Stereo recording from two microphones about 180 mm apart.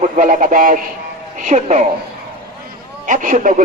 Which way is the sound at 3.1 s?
45° right (ahead or behind).